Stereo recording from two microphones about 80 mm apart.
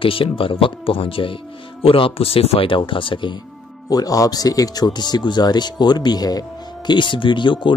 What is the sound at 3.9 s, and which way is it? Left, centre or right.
Speech, left.